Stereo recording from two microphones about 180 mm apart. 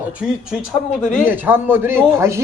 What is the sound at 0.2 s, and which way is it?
A man's voice, 5° right (ahead or behind).